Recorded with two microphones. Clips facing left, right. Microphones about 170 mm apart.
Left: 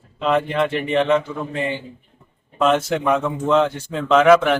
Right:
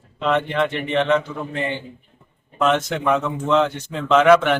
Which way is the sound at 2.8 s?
10° left (ahead or behind).